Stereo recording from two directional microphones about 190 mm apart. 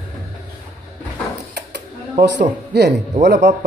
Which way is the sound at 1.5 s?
65° right (ahead or behind).